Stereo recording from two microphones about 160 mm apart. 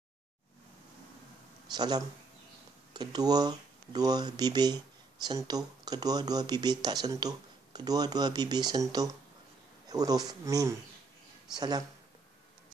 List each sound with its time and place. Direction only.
1.7 s speech: 25° right (ahead or behind)